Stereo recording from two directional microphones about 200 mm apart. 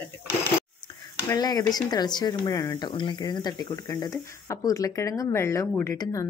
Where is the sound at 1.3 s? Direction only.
20° left (ahead or behind).